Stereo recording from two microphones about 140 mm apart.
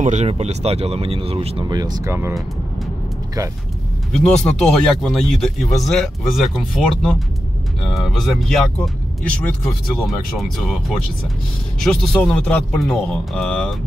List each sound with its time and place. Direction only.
0.0 s speech: 55° right (ahead or behind)
1.7 s speech: 30° right (ahead or behind)
4.1 s speech: 5° left (ahead or behind)